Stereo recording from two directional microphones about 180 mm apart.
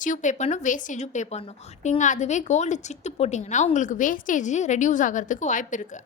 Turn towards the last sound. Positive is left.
turn(degrees=45)  # may be behind; listen again after turning